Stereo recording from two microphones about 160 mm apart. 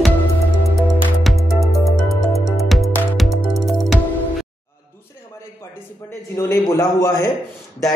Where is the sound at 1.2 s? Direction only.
Centre (ahead or behind).